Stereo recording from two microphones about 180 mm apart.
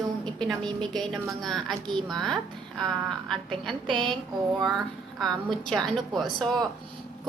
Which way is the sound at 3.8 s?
25° right (ahead or behind).